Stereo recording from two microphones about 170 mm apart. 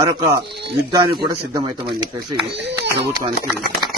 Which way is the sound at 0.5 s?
75° right (ahead or behind).